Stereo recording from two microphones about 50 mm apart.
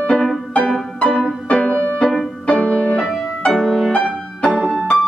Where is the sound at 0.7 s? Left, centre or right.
Centre.